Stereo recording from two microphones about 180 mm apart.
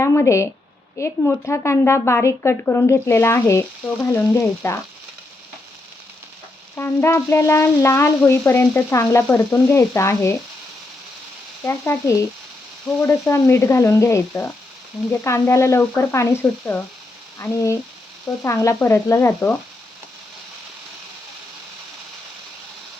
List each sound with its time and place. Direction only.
0.0 s a woman's voice: 15° left (ahead or behind)
6.7 s a woman's voice: 15° left (ahead or behind)
11.6 s a woman's voice: 15° left (ahead or behind)